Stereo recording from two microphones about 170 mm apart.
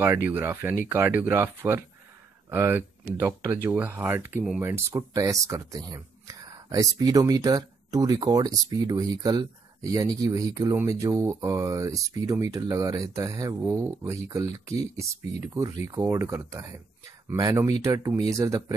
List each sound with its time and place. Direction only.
0.3 s speech: 15° right (ahead or behind)